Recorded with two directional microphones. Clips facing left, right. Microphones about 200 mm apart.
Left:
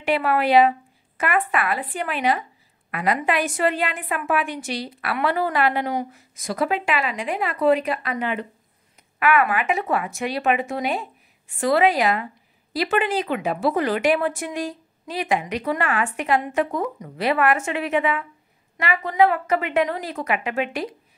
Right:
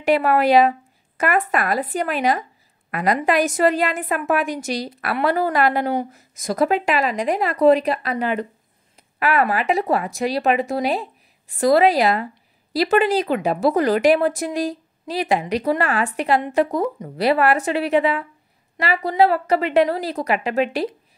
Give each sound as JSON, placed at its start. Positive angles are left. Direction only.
{"t": 0.0, "sound": "a woman's voice", "side_deg": -45}